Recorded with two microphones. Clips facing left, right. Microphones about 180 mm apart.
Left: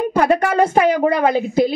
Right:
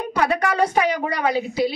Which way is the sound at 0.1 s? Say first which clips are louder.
Left 2 dB; 50° left (ahead or behind).